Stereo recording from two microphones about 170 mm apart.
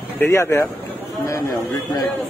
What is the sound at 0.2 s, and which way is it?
Speech, 15° left (ahead or behind).